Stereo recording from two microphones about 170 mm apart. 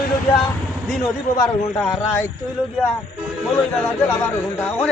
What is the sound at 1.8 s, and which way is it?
Speech, 10° left (ahead or behind).